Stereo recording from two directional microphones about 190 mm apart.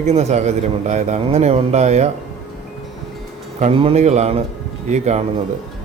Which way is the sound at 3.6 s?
35° right (ahead or behind).